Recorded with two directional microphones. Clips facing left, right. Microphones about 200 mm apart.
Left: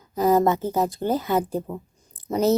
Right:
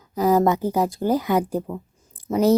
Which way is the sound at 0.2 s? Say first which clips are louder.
Right 1 dB; 10° right (ahead or behind).